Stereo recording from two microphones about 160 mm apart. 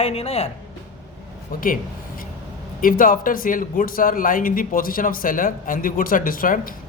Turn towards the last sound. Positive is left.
turn(degrees=60)  # may be behind; listen again after turning